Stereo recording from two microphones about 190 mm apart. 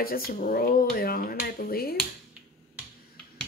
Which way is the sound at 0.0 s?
50° left (ahead or behind).